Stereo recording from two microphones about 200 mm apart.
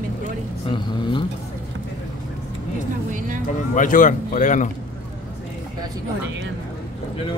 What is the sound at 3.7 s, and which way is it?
Speech, 40° left (ahead or behind).